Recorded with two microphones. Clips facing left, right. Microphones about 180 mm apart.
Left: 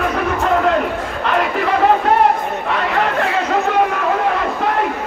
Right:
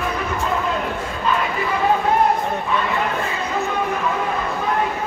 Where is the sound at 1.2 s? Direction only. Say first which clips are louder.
Left 4 dB; 70° left (ahead or behind).